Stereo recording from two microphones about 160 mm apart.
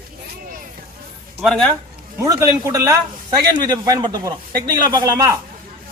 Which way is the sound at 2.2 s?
20° right (ahead or behind).